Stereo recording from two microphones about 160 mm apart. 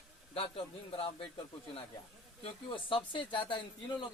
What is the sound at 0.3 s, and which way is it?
Speech, 35° left (ahead or behind).